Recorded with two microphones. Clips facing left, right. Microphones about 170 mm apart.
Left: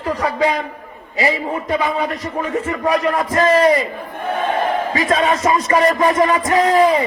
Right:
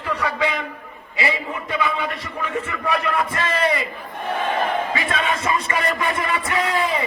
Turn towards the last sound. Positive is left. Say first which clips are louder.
# left 9 dB
turn(degrees=40)  # may be behind; listen again after turning